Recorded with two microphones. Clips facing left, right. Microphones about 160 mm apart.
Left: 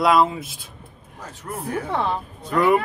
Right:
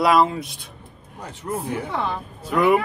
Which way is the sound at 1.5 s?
20° right (ahead or behind).